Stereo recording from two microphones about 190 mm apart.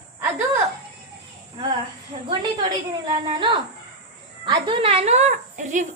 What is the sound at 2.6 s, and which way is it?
A woman's voice, 25° right (ahead or behind).